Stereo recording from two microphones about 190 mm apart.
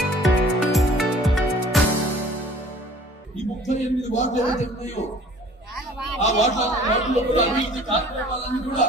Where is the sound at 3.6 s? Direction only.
40° left (ahead or behind).